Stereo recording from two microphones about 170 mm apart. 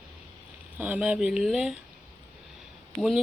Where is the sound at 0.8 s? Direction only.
10° right (ahead or behind).